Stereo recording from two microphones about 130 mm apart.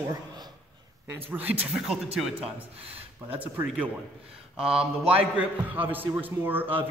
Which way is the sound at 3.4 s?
10° right (ahead or behind).